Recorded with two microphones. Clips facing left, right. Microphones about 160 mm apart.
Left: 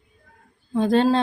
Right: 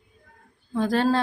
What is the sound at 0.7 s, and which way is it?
Speech, 20° left (ahead or behind).